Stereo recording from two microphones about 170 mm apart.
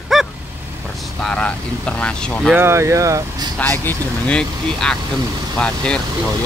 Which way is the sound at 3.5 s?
10° left (ahead or behind).